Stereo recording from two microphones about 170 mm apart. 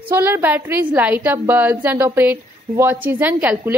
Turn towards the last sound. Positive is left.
turn(degrees=-10)  # may be behind; listen again after turning